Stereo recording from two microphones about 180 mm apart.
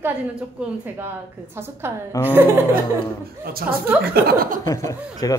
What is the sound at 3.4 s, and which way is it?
Speech, 55° right (ahead or behind).